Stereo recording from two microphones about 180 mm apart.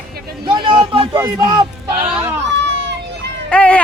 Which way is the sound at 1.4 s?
25° right (ahead or behind).